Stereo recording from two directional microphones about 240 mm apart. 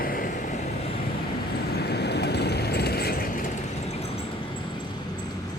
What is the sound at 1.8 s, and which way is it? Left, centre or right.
Vehicle, left.